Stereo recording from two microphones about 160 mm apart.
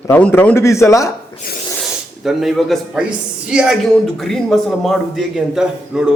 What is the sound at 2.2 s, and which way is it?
A man's voice, centre (ahead or behind).